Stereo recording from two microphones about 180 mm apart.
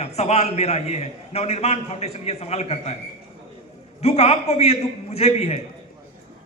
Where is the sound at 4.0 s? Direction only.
35° left (ahead or behind).